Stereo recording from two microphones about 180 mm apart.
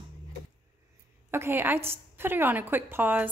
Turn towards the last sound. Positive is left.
turn(degrees=-10)  # may be behind; listen again after turning